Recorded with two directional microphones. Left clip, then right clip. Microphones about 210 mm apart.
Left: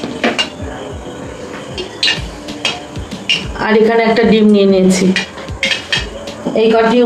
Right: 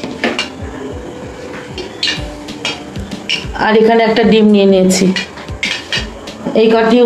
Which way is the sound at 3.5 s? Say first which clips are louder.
Right 3 dB; 30° right (ahead or behind).